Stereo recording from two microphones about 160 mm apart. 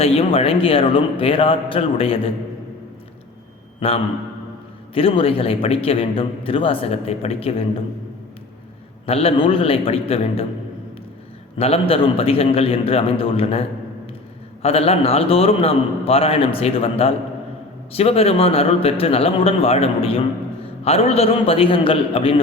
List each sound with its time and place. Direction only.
0.0 s a man's voice: 35° left (ahead or behind)
3.8 s a man's voice: 35° left (ahead or behind)
9.0 s a man's voice: 35° left (ahead or behind)
11.5 s a man's voice: 40° left (ahead or behind)